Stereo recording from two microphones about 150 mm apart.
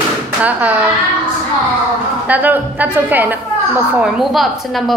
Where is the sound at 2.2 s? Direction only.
10° right (ahead or behind).